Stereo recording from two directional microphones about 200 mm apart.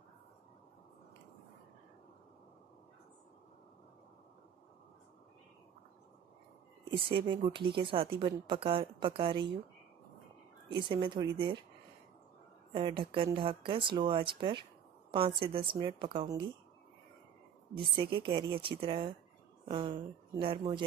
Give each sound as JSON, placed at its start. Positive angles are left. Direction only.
{"t": 6.8, "sound": "a woman's voice", "side_deg": -25}
{"t": 10.9, "sound": "a woman's voice", "side_deg": -25}
{"t": 12.7, "sound": "a woman's voice", "side_deg": -25}
{"t": 17.7, "sound": "a woman's voice", "side_deg": -25}